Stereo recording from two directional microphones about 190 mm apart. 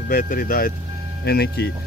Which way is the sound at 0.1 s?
50° left (ahead or behind).